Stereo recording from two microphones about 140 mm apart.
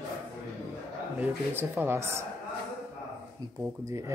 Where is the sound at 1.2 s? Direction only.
15° right (ahead or behind).